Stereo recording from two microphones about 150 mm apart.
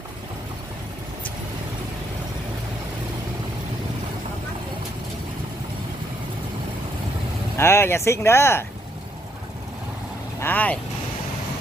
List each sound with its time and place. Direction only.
7.5 s speech: 15° left (ahead or behind)
10.4 s speech: 10° left (ahead or behind)